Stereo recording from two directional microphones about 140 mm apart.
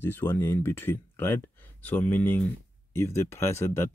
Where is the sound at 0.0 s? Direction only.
15° left (ahead or behind).